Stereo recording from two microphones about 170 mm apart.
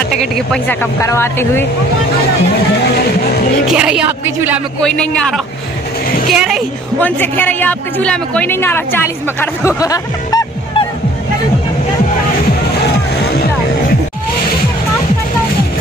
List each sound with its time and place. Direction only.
0.1 s speech: 5° left (ahead or behind)
1.0 s a woman's voice: 15° left (ahead or behind)
3.7 s speech: 5° right (ahead or behind)
4.8 s speech: 5° left (ahead or behind)
6.2 s speech: centre (ahead or behind)
7.0 s a woman's voice: 10° left (ahead or behind)
12.8 s music: 75° left (ahead or behind)